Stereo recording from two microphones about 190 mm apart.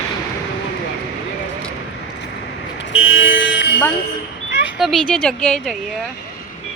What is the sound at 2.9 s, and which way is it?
Vehicle, 90° left.